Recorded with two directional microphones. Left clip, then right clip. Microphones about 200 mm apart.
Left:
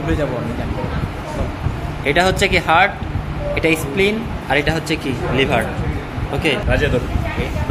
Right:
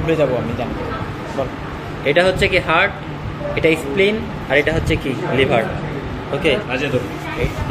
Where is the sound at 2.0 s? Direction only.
35° left (ahead or behind).